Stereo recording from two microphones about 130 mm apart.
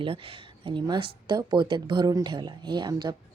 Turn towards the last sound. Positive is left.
turn(degrees=-35)  # may be behind; listen again after turning